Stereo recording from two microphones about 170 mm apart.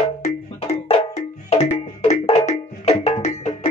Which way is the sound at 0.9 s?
40° left (ahead or behind).